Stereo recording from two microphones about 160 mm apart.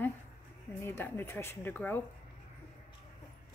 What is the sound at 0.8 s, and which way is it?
A woman's voice, 15° left (ahead or behind).